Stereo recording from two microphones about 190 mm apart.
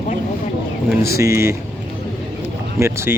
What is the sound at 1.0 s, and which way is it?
Speech, 15° right (ahead or behind).